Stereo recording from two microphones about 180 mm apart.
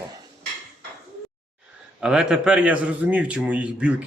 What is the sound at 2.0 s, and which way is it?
A man's voice, 5° right (ahead or behind).